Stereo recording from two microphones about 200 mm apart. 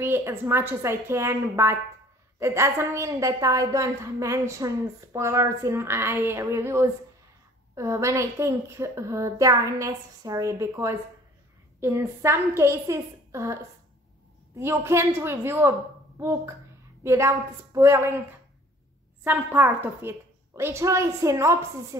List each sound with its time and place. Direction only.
0.0 s a woman's voice: 10° right (ahead or behind)
19.2 s a woman's voice: 10° right (ahead or behind)